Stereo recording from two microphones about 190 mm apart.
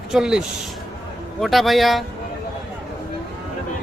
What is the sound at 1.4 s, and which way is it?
Speech, centre (ahead or behind).